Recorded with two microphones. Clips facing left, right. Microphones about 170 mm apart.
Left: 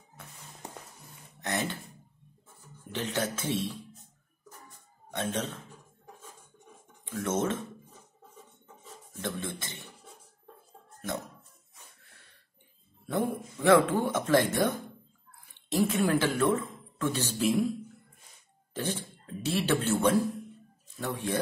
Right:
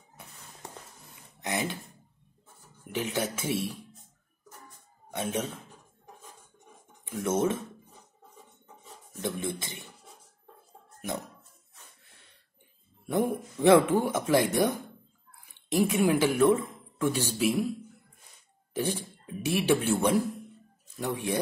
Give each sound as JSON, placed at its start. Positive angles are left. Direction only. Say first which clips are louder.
{"t": 1.4, "sound": "speech", "louder": "right 1 dB", "side_deg": -10}
{"t": 2.9, "sound": "speech", "louder": "right 1 dB", "side_deg": -10}
{"t": 5.1, "sound": "speech", "louder": "right 1 dB", "side_deg": -10}
{"t": 7.2, "sound": "speech", "louder": "right 3 dB", "side_deg": -10}
{"t": 9.2, "sound": "speech", "louder": "right 3 dB", "side_deg": -15}
{"t": 13.0, "sound": "a man's voice", "louder": "right 3 dB", "side_deg": -15}
{"t": 18.7, "sound": "speech", "louder": "right 3 dB", "side_deg": -10}